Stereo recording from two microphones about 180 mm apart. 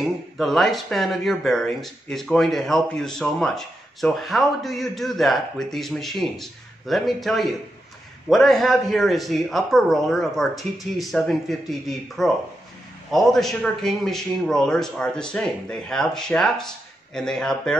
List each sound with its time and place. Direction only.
0.0 s speech: centre (ahead or behind)